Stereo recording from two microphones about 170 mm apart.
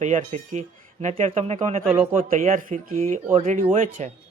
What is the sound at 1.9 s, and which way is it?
Speech, 15° right (ahead or behind).